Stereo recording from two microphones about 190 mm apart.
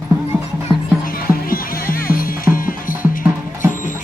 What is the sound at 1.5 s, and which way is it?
Music, 50° left (ahead or behind).